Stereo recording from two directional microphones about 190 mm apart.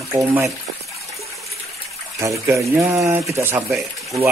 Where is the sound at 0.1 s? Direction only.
15° right (ahead or behind).